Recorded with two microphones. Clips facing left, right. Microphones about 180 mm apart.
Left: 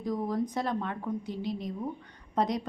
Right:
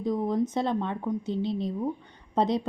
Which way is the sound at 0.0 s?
25° right (ahead or behind).